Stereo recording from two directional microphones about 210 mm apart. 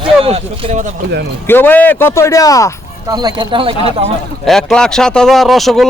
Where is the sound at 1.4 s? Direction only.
10° left (ahead or behind).